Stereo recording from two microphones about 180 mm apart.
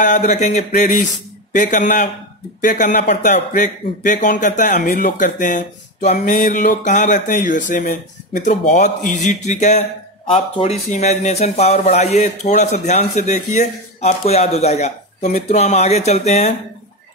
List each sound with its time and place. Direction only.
0.3 s speech: 40° left (ahead or behind)
4.7 s speech: 60° left (ahead or behind); by 16.5 s 35° left (ahead or behind)